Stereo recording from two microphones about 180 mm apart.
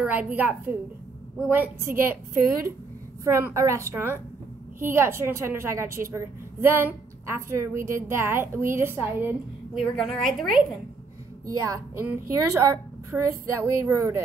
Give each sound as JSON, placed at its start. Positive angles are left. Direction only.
{"t": 0.0, "sound": "a woman's voice", "side_deg": -10}
{"t": 9.8, "sound": "a woman's voice", "side_deg": 0}
{"t": 11.4, "sound": "a woman's voice", "side_deg": -20}